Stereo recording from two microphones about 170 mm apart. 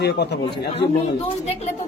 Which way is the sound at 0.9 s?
40° left (ahead or behind).